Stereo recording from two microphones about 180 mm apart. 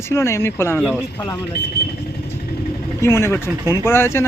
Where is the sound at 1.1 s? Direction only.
25° left (ahead or behind).